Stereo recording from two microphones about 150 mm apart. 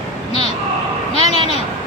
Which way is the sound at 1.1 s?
40° left (ahead or behind).